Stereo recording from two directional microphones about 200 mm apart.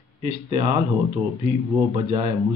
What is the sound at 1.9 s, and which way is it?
Speech, 25° right (ahead or behind).